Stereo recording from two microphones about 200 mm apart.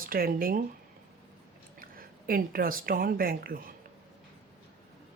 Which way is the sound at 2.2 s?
45° right (ahead or behind).